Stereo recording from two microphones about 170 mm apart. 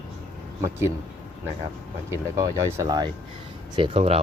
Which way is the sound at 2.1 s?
20° right (ahead or behind).